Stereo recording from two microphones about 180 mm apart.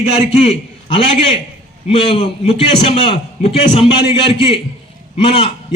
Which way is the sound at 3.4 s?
40° left (ahead or behind).